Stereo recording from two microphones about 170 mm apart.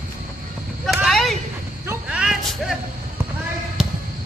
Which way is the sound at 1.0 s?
Centre (ahead or behind).